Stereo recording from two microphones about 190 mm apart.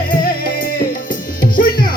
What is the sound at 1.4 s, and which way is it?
Music, 50° left (ahead or behind).